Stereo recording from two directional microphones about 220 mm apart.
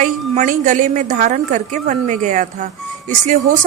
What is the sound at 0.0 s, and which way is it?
A woman's voice, 35° right (ahead or behind).